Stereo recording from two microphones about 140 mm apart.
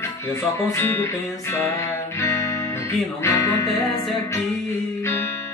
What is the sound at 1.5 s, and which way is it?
Music, 20° left (ahead or behind).